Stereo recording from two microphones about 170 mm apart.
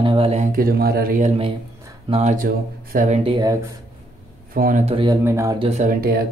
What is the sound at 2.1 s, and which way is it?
Speech, 40° right (ahead or behind).